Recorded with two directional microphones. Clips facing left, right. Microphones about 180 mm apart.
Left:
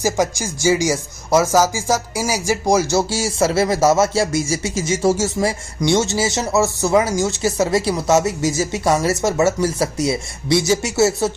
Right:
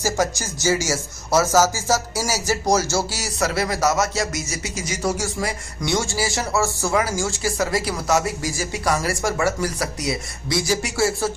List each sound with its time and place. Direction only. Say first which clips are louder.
0.0 s speech: left 3 dB; 10° left (ahead or behind)
3.1 s speech: left 6 dB; 25° left (ahead or behind)